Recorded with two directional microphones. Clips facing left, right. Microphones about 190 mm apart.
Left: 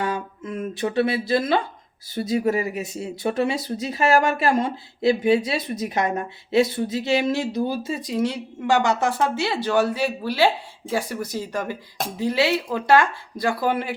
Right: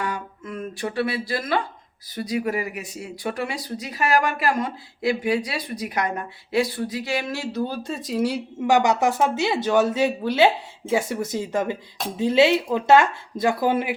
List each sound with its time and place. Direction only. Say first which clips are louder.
0.0 s speech: left 3 dB; 25° left (ahead or behind)
7.8 s speech: even; centre (ahead or behind); by 13.9 s 20° right (ahead or behind)